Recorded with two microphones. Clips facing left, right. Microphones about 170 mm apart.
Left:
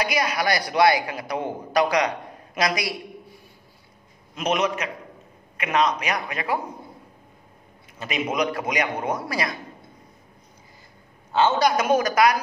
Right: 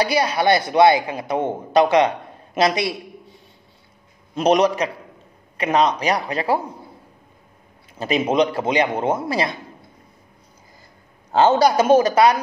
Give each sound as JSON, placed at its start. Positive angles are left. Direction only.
{"t": 0.0, "sound": "a man's voice", "side_deg": -30}
{"t": 4.4, "sound": "speech", "side_deg": -35}
{"t": 8.0, "sound": "a man's voice", "side_deg": -30}
{"t": 11.3, "sound": "a man's voice", "side_deg": -40}